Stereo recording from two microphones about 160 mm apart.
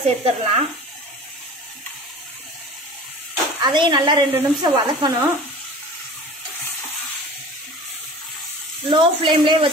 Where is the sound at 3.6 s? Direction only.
30° right (ahead or behind).